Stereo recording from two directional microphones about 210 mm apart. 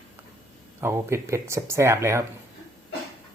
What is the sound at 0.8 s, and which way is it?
Speech, 10° right (ahead or behind).